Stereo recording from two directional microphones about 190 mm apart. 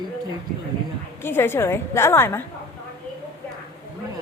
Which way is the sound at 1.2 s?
10° left (ahead or behind).